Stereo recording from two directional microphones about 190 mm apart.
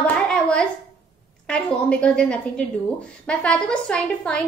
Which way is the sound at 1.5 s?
5° left (ahead or behind).